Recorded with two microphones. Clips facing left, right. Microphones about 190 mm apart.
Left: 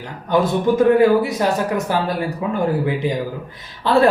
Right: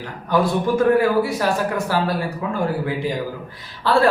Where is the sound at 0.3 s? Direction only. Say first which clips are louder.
Left 2 dB; 20° left (ahead or behind).